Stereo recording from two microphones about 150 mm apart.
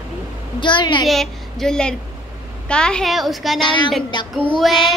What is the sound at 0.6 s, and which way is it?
Speech, 30° left (ahead or behind).